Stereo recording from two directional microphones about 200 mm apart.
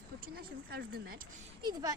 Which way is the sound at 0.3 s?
50° right (ahead or behind).